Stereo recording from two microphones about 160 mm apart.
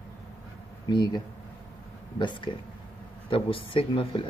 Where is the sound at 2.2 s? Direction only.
30° left (ahead or behind).